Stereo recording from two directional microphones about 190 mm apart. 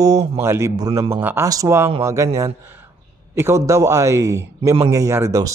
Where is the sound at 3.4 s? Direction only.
15° right (ahead or behind).